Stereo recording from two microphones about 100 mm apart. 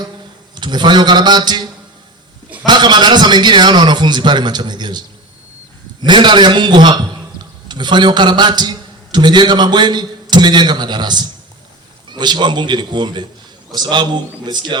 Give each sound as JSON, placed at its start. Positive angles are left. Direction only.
{"t": 0.5, "sound": "a man's voice", "side_deg": -50}
{"t": 2.6, "sound": "a man's voice", "side_deg": -45}